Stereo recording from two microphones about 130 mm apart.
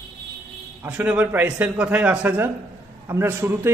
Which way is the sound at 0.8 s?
10° right (ahead or behind).